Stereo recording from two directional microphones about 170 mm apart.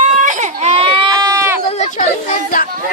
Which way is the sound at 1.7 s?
40° left (ahead or behind).